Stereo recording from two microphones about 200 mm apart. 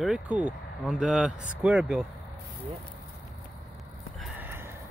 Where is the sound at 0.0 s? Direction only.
5° right (ahead or behind).